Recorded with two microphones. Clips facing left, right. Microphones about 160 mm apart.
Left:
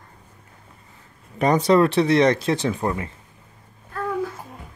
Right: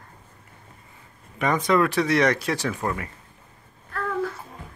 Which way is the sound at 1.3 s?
35° left (ahead or behind).